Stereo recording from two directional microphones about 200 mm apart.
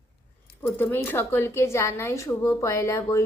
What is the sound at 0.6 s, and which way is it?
A woman's voice, 10° left (ahead or behind).